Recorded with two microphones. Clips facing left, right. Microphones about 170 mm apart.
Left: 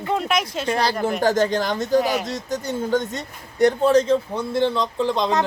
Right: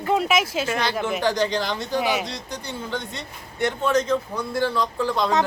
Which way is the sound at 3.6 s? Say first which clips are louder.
Left 6 dB; 35° left (ahead or behind).